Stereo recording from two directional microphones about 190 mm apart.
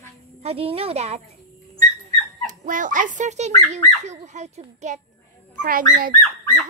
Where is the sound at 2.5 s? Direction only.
45° right (ahead or behind).